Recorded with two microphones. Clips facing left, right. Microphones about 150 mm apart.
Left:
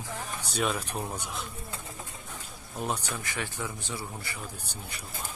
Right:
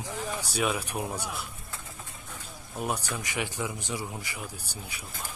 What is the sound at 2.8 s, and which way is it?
A man's voice, 5° right (ahead or behind).